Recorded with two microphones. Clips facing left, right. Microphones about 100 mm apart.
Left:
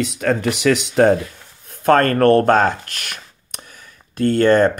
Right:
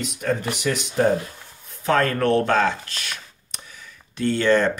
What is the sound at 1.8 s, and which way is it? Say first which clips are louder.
Speech: left 7 dB; 55° left (ahead or behind).